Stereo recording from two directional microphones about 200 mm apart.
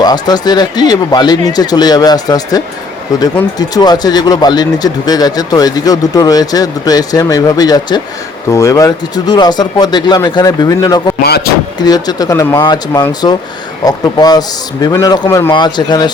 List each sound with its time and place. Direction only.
0.0 s speech: 20° left (ahead or behind)
3.6 s speech: 20° left (ahead or behind)
11.2 s music: 55° left (ahead or behind)
11.8 s speech: 20° left (ahead or behind)